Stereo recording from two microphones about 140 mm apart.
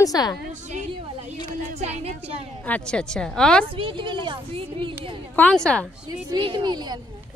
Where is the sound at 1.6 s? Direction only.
50° right (ahead or behind).